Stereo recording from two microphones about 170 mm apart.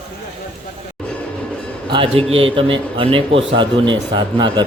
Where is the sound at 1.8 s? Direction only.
30° right (ahead or behind).